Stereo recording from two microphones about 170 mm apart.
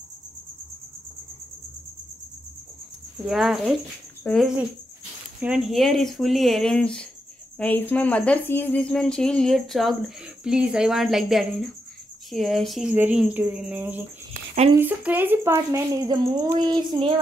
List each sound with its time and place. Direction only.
3.3 s speech: centre (ahead or behind); by 17.1 s 25° right (ahead or behind)